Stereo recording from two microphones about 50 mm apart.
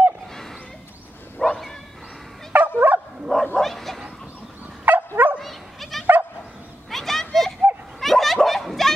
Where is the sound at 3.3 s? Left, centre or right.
Centre.